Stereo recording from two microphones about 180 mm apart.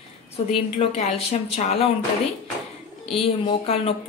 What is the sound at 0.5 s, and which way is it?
Speech, 35° left (ahead or behind).